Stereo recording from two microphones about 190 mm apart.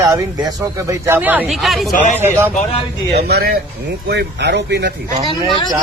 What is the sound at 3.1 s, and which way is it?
Speech, 55° right (ahead or behind).